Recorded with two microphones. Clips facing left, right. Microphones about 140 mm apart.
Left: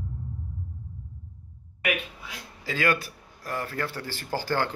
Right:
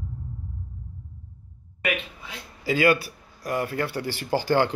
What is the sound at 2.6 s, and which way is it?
Speech, 10° right (ahead or behind).